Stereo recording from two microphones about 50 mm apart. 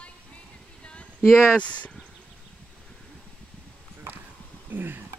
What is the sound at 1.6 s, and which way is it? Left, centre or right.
Speech, left.